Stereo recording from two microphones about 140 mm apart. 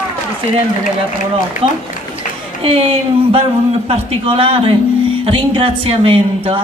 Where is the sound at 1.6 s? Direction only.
45° right (ahead or behind).